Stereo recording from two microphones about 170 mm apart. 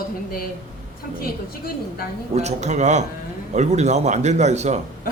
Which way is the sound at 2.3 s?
40° right (ahead or behind).